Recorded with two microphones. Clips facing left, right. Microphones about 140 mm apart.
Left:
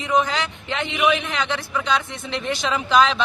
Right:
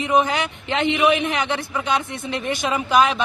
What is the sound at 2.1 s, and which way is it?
Speech, 50° right (ahead or behind).